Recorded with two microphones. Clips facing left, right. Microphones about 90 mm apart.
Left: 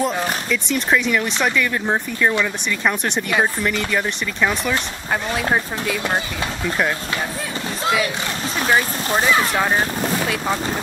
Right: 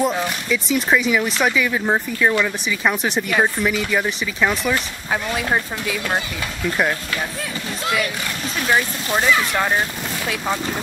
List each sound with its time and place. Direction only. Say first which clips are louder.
0.0 s speech: even; centre (ahead or behind)
8.6 s speech: left 1 dB; 5° left (ahead or behind)